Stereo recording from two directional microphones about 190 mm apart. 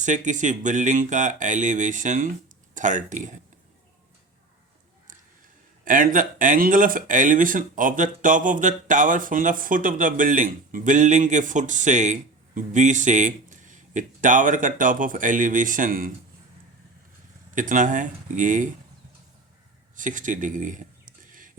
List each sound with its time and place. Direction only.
0.0 s speech: 40° right (ahead or behind)
5.8 s speech: 45° right (ahead or behind)
17.5 s speech: 45° right (ahead or behind)
20.0 s a sound: 40° right (ahead or behind)